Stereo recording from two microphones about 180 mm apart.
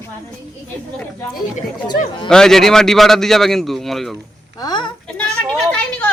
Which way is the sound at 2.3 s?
5° left (ahead or behind).